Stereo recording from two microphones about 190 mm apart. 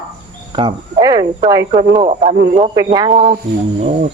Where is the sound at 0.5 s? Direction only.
25° right (ahead or behind).